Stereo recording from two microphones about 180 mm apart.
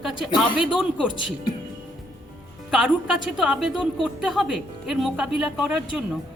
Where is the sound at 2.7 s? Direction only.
5° right (ahead or behind).